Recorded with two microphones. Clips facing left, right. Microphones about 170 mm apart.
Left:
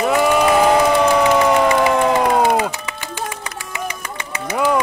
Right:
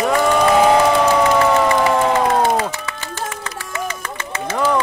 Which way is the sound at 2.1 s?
15° left (ahead or behind).